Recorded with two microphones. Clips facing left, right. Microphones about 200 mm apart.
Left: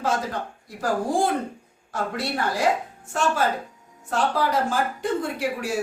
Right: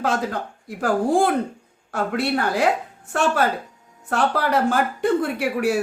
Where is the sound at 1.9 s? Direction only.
65° right (ahead or behind).